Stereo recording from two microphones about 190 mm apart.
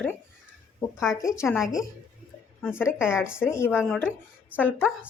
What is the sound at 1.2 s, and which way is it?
Speech, 15° left (ahead or behind).